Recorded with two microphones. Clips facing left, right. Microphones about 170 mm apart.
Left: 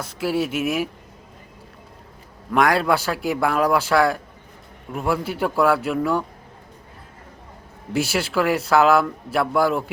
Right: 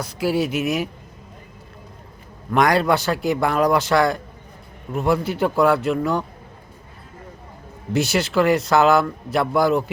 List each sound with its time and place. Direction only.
0.0 s a man's voice: centre (ahead or behind)
2.5 s a man's voice: 5° left (ahead or behind)
7.9 s a man's voice: 5° left (ahead or behind)